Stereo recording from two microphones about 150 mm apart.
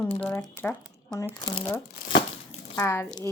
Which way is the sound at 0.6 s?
15° left (ahead or behind).